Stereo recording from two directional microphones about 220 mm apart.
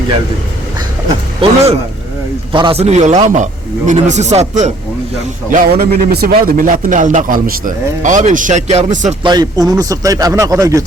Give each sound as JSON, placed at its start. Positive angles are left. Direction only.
{"t": 1.0, "sound": "a man's voice", "side_deg": -25}
{"t": 9.2, "sound": "speech", "side_deg": -20}